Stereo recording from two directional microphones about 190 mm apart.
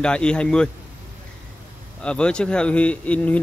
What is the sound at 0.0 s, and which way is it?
Speech, 5° left (ahead or behind).